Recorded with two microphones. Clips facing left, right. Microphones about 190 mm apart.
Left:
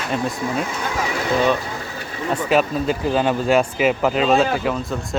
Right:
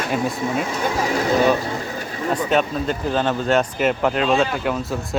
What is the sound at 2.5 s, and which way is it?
Speech, 5° left (ahead or behind).